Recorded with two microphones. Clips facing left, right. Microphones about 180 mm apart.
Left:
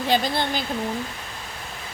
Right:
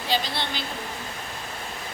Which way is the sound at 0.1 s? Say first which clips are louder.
Left 5 dB; 45° left (ahead or behind).